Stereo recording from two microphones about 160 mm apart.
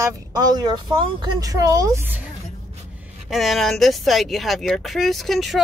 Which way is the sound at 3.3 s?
Centre (ahead or behind).